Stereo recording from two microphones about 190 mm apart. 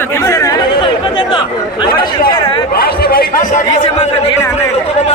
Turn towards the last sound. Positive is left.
turn(degrees=50)  # may be behind; listen again after turning